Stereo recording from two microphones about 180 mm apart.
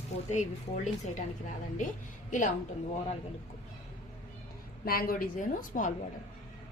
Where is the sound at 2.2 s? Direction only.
45° left (ahead or behind).